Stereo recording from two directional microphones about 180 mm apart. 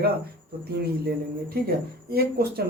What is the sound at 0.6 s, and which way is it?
Speech, 60° right (ahead or behind).